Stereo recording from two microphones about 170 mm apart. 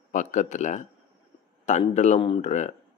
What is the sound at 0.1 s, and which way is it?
Speech, 45° left (ahead or behind).